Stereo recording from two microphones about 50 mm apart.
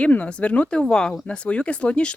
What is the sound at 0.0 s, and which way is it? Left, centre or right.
Speech, left.